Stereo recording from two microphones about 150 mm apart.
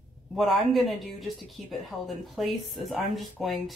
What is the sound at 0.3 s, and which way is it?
Speech, centre (ahead or behind).